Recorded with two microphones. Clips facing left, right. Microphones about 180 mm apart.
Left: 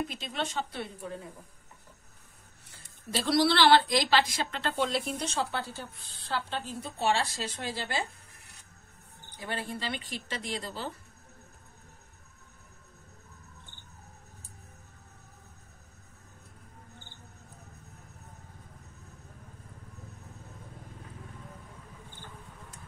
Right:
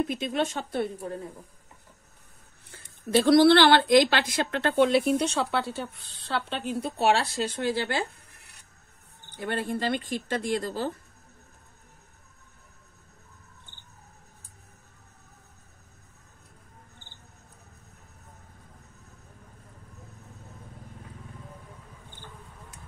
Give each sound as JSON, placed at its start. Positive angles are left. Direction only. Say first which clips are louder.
{"t": 0.1, "sound": "speech", "louder": "right 7 dB", "side_deg": -55}
{"t": 3.1, "sound": "a woman's voice", "louder": "right 9 dB", "side_deg": -55}
{"t": 9.4, "sound": "speech", "louder": "right 7 dB", "side_deg": -55}